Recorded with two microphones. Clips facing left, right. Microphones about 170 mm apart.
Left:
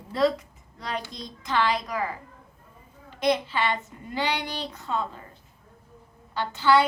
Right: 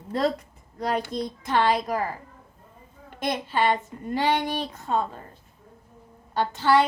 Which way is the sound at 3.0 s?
50° right (ahead or behind).